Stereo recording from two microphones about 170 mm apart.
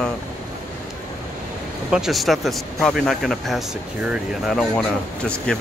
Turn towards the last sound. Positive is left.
turn(degrees=5)  # may be behind; listen again after turning